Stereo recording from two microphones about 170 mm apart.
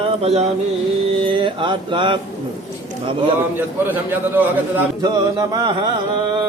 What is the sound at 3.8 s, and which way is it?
Speech, 10° right (ahead or behind).